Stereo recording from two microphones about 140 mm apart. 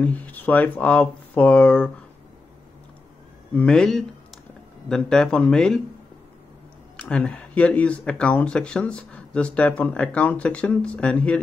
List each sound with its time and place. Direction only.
0.0 s speech: 10° left (ahead or behind)
3.5 s a man's voice: 5° left (ahead or behind)
7.0 s speech: 10° left (ahead or behind)